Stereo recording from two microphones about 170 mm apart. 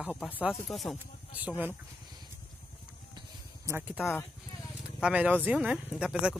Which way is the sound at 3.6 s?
15° right (ahead or behind).